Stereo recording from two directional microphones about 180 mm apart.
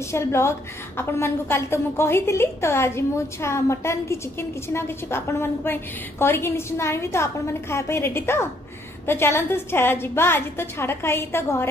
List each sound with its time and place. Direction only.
0.1 s a woman's voice: 15° left (ahead or behind)